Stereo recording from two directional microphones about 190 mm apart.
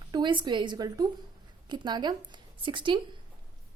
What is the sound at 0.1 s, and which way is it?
A woman's voice, 25° right (ahead or behind).